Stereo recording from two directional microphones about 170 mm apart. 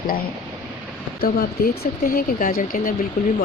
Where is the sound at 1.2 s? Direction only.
60° left (ahead or behind).